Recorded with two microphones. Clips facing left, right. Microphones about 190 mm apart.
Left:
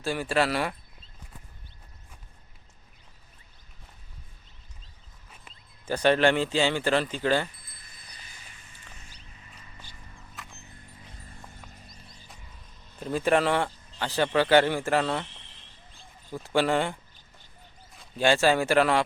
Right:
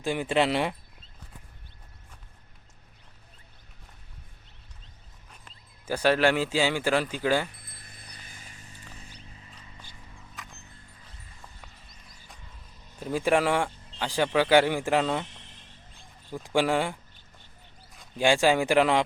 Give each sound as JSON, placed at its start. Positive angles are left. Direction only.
{"t": 0.0, "sound": "speech", "side_deg": -20}
{"t": 5.8, "sound": "speech", "side_deg": -5}
{"t": 7.5, "sound": "a sound", "side_deg": -60}
{"t": 10.2, "sound": "a sound", "side_deg": 0}
{"t": 13.0, "sound": "speech", "side_deg": -10}
{"t": 16.3, "sound": "speech", "side_deg": -15}
{"t": 18.2, "sound": "speech", "side_deg": -15}